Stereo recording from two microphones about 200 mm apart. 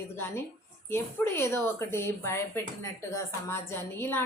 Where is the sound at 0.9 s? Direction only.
10° left (ahead or behind).